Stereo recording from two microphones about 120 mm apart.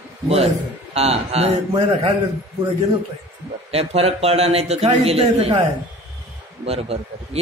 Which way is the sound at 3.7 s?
55° right (ahead or behind).